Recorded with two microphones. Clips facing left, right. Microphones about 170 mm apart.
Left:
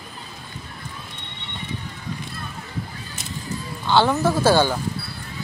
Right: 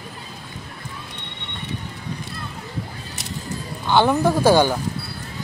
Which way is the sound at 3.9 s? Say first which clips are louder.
Right 1 dB; 15° right (ahead or behind).